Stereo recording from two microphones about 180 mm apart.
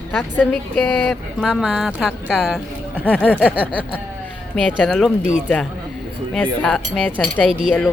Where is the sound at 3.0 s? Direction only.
5° left (ahead or behind).